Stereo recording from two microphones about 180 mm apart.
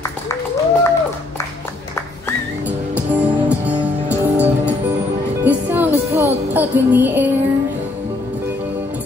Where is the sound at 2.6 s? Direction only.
10° right (ahead or behind).